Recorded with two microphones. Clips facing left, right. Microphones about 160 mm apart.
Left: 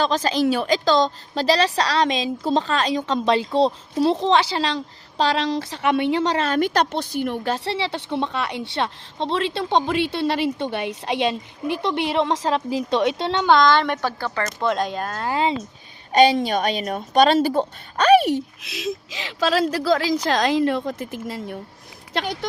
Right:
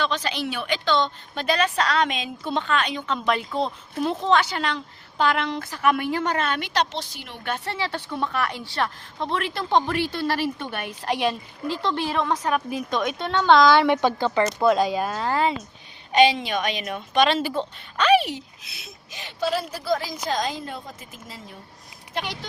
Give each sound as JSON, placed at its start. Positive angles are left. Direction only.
{"t": 0.0, "sound": "a woman's voice", "side_deg": 40}
{"t": 7.4, "sound": "a woman's voice", "side_deg": 30}
{"t": 13.5, "sound": "speech", "side_deg": -5}
{"t": 15.3, "sound": "a woman's voice", "side_deg": 20}
{"t": 16.1, "sound": "a woman's voice", "side_deg": 40}
{"t": 18.6, "sound": "a woman's voice", "side_deg": 90}
{"t": 22.1, "sound": "a woman's voice", "side_deg": 85}